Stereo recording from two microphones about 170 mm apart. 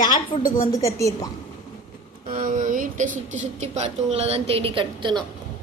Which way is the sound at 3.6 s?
40° right (ahead or behind).